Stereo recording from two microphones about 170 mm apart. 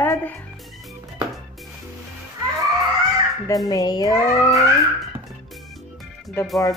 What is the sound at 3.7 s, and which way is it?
Speech, 20° left (ahead or behind).